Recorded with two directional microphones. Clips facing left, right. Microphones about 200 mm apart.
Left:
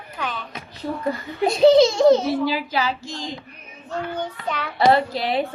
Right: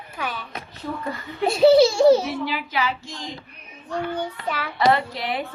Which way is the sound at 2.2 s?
35° left (ahead or behind).